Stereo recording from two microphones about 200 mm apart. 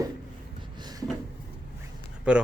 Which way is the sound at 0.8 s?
20° right (ahead or behind).